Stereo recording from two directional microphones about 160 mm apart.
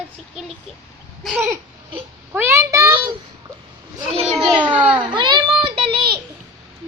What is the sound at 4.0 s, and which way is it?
Children playing, 35° right (ahead or behind).